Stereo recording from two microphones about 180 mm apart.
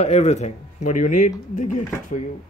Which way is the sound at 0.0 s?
40° left (ahead or behind).